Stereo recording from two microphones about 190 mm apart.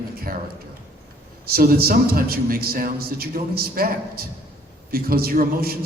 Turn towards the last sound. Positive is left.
turn(degrees=-55)  # may be behind; listen again after turning